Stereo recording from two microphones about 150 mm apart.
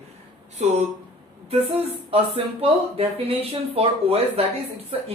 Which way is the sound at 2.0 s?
40° right (ahead or behind).